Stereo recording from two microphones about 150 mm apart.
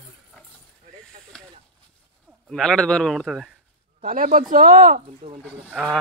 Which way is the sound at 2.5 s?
5° left (ahead or behind).